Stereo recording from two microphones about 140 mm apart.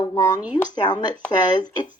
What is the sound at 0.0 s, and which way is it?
Speech, 25° left (ahead or behind).